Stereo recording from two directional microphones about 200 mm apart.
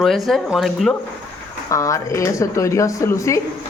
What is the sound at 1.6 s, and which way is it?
Speech, 15° left (ahead or behind).